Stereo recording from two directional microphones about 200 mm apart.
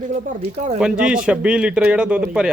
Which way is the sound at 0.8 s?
5° right (ahead or behind).